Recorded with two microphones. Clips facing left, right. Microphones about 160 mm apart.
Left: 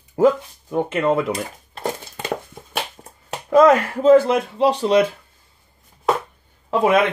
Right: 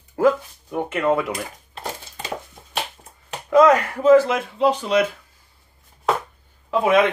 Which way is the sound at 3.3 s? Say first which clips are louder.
Left 1 dB; 30° left (ahead or behind).